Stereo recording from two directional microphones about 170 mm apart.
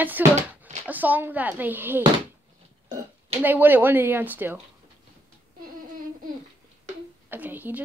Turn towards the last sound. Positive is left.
turn(degrees=-10)  # may be behind; listen again after turning